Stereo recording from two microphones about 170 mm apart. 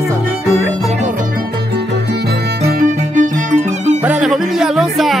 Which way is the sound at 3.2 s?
45° right (ahead or behind).